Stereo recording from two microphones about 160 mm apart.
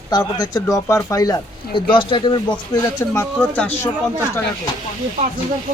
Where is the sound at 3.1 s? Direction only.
10° left (ahead or behind).